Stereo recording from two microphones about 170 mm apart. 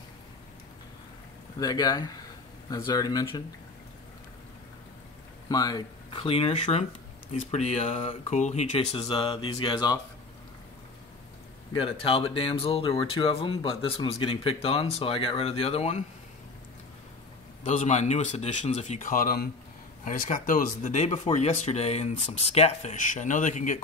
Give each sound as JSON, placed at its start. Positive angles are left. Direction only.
{"t": 1.6, "sound": "speech", "side_deg": 20}
{"t": 5.5, "sound": "speech", "side_deg": 20}
{"t": 11.7, "sound": "speech", "side_deg": 30}
{"t": 17.6, "sound": "speech", "side_deg": 45}